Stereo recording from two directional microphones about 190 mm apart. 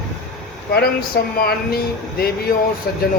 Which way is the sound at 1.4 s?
55° left (ahead or behind).